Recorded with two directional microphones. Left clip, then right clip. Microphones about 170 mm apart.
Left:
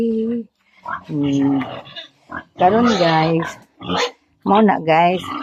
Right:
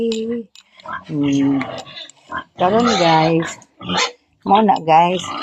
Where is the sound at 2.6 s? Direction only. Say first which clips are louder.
Even; 20° left (ahead or behind).